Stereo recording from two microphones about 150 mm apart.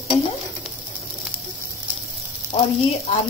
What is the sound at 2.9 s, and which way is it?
Speech, 45° left (ahead or behind).